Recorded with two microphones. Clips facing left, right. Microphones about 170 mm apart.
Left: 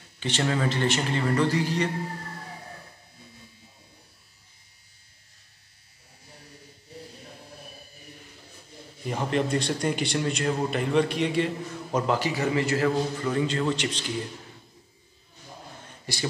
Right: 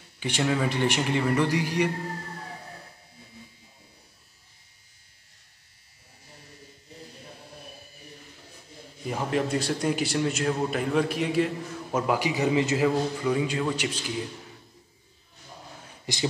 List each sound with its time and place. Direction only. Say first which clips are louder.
0.2 s a man's voice: even; 10° right (ahead or behind)
9.0 s a man's voice: left 1 dB; 5° right (ahead or behind)
16.1 s speech: right 1 dB; 15° right (ahead or behind)